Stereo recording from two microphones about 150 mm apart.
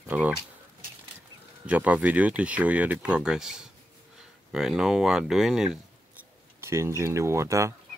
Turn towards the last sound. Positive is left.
turn(degrees=-20)  # may be behind; listen again after turning